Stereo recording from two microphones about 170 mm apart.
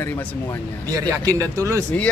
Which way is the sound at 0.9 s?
20° right (ahead or behind).